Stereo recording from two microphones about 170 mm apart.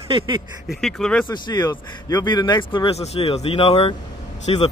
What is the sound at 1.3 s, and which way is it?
Speech, 25° left (ahead or behind).